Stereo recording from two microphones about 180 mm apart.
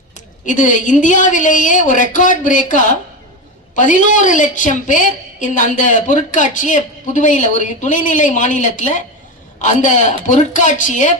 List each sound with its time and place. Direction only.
0.4 s a woman's voice: 45° left (ahead or behind)